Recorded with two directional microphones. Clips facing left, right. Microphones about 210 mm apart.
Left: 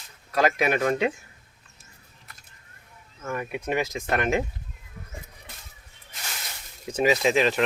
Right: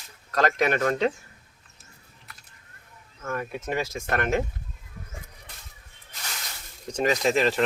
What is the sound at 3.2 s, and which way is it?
Speech, 15° left (ahead or behind).